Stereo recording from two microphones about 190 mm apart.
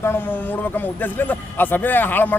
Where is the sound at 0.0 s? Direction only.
10° left (ahead or behind).